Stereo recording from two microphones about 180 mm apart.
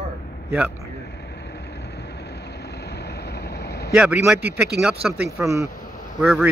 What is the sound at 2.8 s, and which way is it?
Vehicle, 65° left (ahead or behind).